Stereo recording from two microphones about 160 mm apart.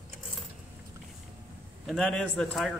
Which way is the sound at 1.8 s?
5° left (ahead or behind).